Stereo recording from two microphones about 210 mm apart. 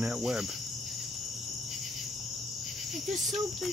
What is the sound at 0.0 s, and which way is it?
Cricket, 5° right (ahead or behind).